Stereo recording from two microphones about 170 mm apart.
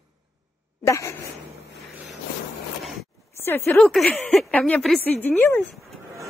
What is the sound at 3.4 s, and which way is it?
A woman's voice, 15° left (ahead or behind).